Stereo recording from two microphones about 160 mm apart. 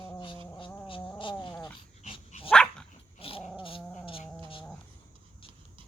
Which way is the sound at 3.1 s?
35° left (ahead or behind).